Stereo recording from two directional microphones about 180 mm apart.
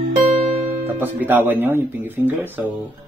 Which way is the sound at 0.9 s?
10° right (ahead or behind).